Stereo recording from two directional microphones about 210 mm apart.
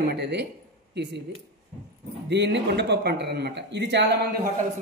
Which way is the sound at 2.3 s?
55° right (ahead or behind).